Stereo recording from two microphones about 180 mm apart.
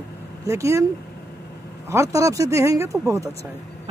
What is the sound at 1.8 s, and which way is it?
Speech, 15° right (ahead or behind).